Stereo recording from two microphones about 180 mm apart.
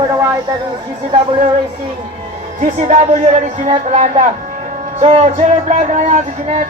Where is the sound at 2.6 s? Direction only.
40° right (ahead or behind).